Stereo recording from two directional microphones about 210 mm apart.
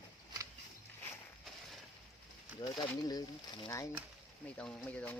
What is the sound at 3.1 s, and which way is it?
Speech, 20° left (ahead or behind).